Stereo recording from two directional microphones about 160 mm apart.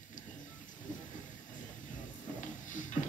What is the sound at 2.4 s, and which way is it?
Music, 50° left (ahead or behind).